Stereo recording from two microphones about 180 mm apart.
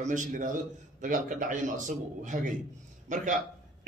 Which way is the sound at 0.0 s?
45° right (ahead or behind).